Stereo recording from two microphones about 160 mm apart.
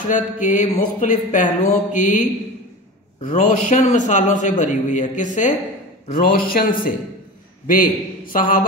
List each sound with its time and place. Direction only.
0.0 s a man's voice: 55° left (ahead or behind)
3.3 s a man's voice: 55° left (ahead or behind)
6.1 s a man's voice: 65° left (ahead or behind)